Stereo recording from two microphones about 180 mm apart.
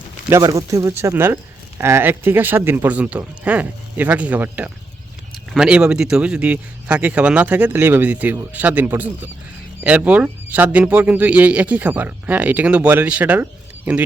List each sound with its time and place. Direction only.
0.3 s a man's voice: 20° right (ahead or behind)